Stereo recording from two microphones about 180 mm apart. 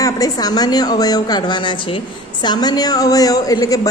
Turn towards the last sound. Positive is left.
turn(degrees=20)  # may be behind; listen again after turning